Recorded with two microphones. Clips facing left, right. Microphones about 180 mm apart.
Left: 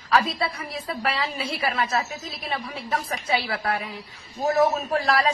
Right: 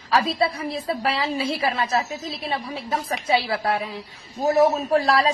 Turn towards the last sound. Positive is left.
turn(degrees=-30)  # may be behind; listen again after turning